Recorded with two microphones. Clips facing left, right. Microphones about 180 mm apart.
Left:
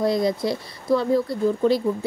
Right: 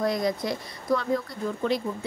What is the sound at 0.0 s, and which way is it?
Speech, 30° left (ahead or behind).